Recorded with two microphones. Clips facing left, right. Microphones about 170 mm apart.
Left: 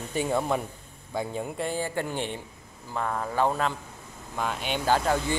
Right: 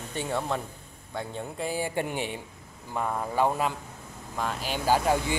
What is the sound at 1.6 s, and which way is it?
A man's voice, 10° right (ahead or behind).